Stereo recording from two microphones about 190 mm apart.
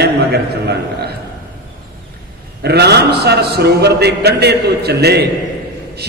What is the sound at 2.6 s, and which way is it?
A man's voice, 60° right (ahead or behind).